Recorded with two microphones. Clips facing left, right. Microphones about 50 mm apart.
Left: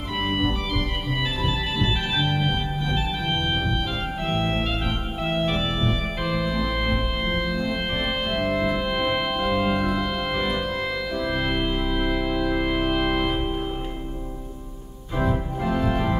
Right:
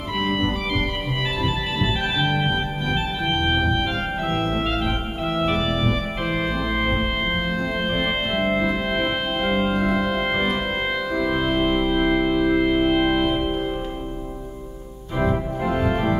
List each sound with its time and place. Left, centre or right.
0.2 s organ: centre
2.2 s organ: right
4.8 s organ: centre
6.2 s organ: right
6.7 s organ: centre
8.4 s organ: right
8.6 s organ: centre
11.1 s music: centre
11.8 s music: right
12.6 s organ: centre
13.4 s music: centre
15.1 s organ: centre